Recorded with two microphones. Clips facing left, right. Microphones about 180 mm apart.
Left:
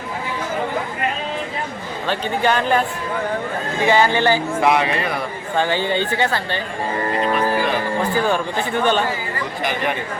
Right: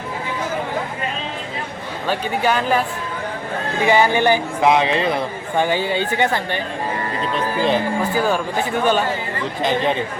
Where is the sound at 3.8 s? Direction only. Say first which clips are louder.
Right 1 dB; 15° right (ahead or behind).